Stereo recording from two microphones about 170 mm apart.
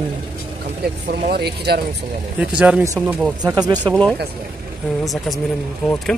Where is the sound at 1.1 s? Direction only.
65° right (ahead or behind).